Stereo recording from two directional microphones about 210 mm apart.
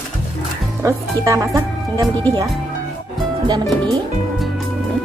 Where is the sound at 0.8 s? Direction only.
15° right (ahead or behind).